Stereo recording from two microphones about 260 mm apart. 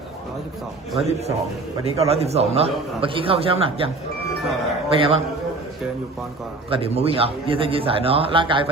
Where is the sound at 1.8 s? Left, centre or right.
Right.